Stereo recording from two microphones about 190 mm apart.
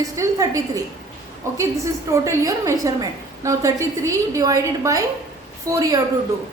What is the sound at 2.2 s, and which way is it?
A woman's voice, 15° right (ahead or behind).